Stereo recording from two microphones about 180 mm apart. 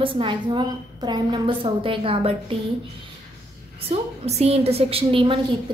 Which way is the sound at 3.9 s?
35° right (ahead or behind).